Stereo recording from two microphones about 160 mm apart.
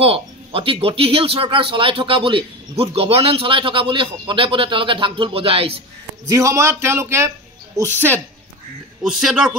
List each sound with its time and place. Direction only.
0.0 s speech: 35° right (ahead or behind)
6.2 s a man's voice: 20° right (ahead or behind)
9.0 s speech: 5° right (ahead or behind)